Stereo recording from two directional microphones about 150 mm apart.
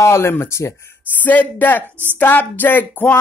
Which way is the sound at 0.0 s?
20° left (ahead or behind).